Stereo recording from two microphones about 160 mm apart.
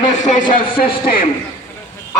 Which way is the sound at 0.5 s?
65° left (ahead or behind).